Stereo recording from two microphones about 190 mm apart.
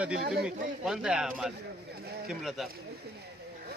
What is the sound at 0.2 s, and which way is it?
Speech, 45° right (ahead or behind).